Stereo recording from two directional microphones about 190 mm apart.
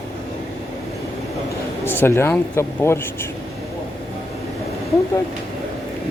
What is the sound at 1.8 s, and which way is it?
Speech, 10° left (ahead or behind).